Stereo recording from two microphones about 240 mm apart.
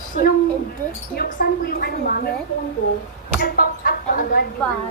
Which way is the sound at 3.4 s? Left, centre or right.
Left.